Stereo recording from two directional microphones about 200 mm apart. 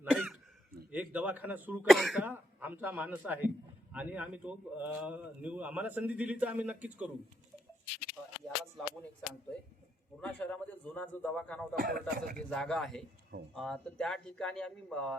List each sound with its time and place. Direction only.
0.0 s throat clearing: 5° right (ahead or behind)
0.9 s a man's voice: 5° right (ahead or behind)
8.4 s a man's voice: 5° left (ahead or behind)
11.8 s speech: 45° right (ahead or behind)
12.2 s speech: 5° left (ahead or behind)